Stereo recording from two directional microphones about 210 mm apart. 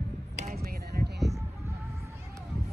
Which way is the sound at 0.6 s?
50° right (ahead or behind).